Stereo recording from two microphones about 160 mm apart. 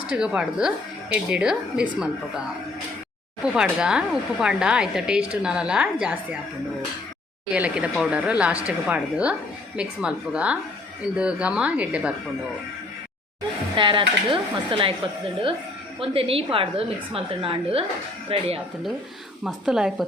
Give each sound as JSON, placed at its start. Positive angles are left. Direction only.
{"t": 0.1, "sound": "speech", "side_deg": -5}
{"t": 3.4, "sound": "speech", "side_deg": -5}
{"t": 7.5, "sound": "speech", "side_deg": -10}
{"t": 13.7, "sound": "a woman's voice", "side_deg": -30}
{"t": 16.0, "sound": "a woman's voice", "side_deg": -35}
{"t": 19.5, "sound": "speech", "side_deg": -5}